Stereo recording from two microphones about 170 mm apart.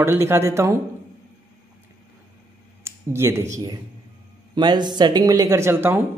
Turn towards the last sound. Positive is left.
turn(degrees=-10)  # may be behind; listen again after turning